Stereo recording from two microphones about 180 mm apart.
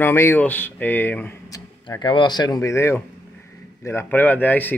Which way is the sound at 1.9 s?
25° left (ahead or behind).